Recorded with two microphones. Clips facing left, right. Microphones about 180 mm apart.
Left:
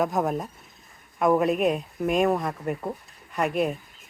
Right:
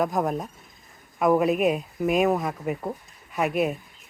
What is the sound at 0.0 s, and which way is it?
Speech, centre (ahead or behind).